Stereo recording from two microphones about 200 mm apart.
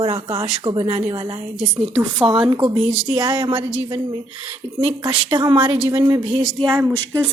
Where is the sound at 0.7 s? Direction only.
30° right (ahead or behind).